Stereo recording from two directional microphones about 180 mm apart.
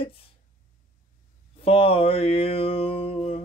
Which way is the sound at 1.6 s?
30° left (ahead or behind).